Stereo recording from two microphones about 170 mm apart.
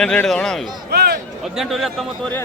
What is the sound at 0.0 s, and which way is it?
Speech, 5° left (ahead or behind).